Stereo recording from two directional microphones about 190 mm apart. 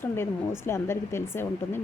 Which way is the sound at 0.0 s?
10° left (ahead or behind).